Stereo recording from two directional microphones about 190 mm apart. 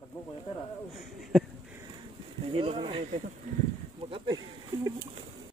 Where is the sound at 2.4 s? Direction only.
30° right (ahead or behind).